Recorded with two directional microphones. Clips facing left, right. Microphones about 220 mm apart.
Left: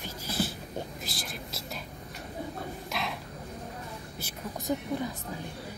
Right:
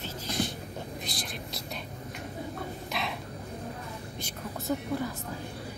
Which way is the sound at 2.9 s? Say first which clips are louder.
Even; centre (ahead or behind).